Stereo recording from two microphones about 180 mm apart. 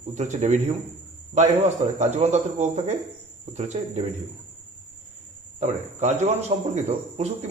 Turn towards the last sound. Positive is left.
turn(degrees=-40)  # may be behind; listen again after turning